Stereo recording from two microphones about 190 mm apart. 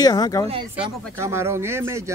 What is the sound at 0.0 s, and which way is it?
Speech, 20° left (ahead or behind).